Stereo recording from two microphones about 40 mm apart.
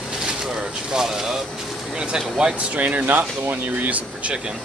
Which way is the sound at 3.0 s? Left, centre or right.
Right.